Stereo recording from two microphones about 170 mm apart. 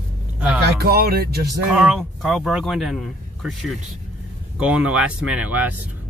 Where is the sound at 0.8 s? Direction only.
70° right (ahead or behind).